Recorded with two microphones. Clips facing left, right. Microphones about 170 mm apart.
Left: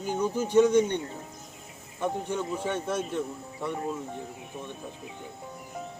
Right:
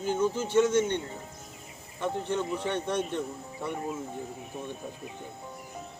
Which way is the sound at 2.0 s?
10° left (ahead or behind).